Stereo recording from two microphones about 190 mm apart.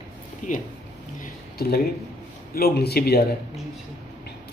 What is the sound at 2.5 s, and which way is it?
Speech, 55° left (ahead or behind).